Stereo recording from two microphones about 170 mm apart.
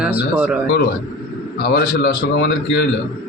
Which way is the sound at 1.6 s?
65° left (ahead or behind).